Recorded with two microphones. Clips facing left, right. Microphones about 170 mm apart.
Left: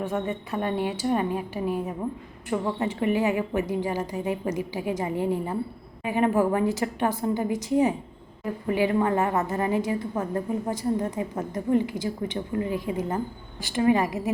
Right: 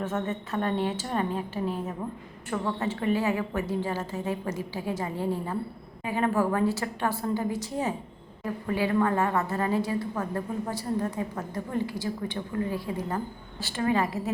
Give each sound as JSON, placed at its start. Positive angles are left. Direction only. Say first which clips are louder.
{"t": 0.0, "sound": "a woman's voice", "louder": "left 2 dB", "side_deg": 15}